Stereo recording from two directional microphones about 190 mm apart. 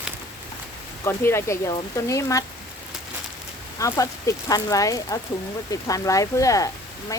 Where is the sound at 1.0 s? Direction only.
15° left (ahead or behind).